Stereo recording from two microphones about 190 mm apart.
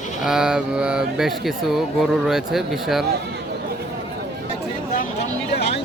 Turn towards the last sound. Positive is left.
turn(degrees=65)  # may be behind; listen again after turning